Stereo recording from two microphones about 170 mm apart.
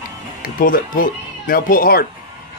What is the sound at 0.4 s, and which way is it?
Speech, 55° left (ahead or behind).